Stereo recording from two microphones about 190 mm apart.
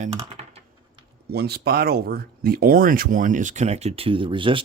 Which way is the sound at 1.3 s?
55° right (ahead or behind).